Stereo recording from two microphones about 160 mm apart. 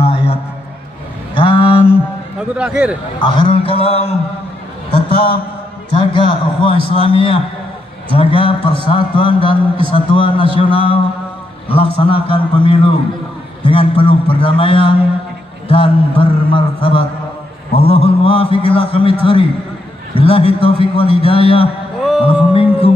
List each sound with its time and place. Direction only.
0.0 s music: 35° left (ahead or behind)
1.3 s a sound: 35° left (ahead or behind)
2.5 s a man's voice: 5° right (ahead or behind)
3.2 s a man's voice: 30° left (ahead or behind)
20.2 s a man's voice: 35° left (ahead or behind)
22.2 s music: 35° left (ahead or behind)